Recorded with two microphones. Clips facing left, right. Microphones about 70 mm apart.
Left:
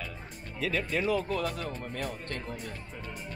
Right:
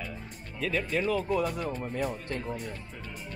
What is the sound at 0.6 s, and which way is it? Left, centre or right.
Speech, centre.